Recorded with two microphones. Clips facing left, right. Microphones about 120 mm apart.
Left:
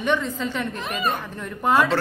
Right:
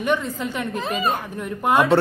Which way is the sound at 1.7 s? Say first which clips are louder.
Right 3 dB; 20° right (ahead or behind).